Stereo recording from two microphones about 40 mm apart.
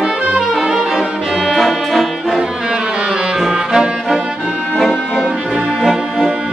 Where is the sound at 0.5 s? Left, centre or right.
Centre.